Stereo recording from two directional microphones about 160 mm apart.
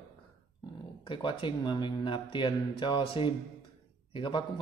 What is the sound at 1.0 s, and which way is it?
A man's voice, 30° left (ahead or behind).